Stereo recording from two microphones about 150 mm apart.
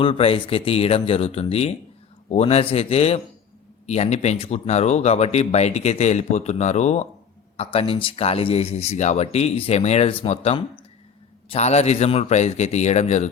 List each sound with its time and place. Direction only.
0.0 s speech: 40° left (ahead or behind)